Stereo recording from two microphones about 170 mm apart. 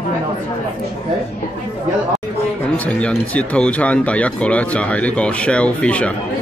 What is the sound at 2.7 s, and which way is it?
Speech, 5° left (ahead or behind).